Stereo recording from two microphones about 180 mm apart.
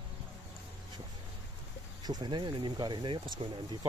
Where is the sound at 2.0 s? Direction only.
25° right (ahead or behind).